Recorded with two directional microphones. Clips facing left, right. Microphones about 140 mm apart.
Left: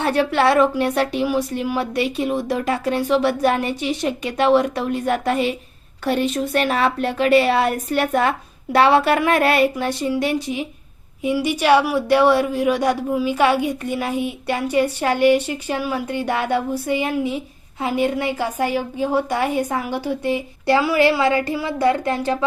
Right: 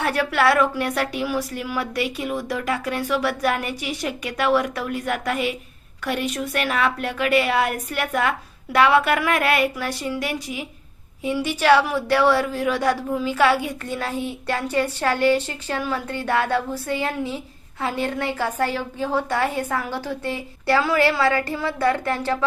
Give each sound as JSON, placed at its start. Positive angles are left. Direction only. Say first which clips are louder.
{"t": 0.0, "sound": "speech", "louder": "left 3 dB", "side_deg": 25}
{"t": 11.4, "sound": "speech", "louder": "left 1 dB", "side_deg": 15}